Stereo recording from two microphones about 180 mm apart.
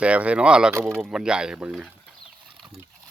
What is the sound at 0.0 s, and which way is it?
Speech, 5° right (ahead or behind).